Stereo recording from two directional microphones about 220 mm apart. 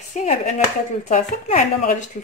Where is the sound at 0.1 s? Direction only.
35° left (ahead or behind).